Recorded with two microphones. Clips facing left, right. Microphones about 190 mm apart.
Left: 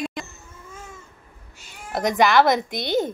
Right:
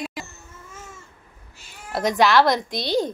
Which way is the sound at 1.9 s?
Centre (ahead or behind).